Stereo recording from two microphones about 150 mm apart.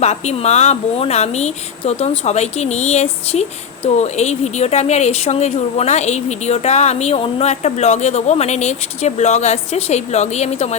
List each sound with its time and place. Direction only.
0.0 s speech: 45° left (ahead or behind)